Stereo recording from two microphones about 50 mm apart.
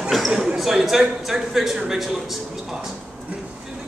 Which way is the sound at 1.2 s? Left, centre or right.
Centre.